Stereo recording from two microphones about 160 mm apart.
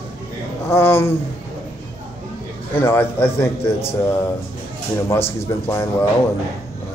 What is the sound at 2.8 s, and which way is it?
A man's voice, 15° left (ahead or behind).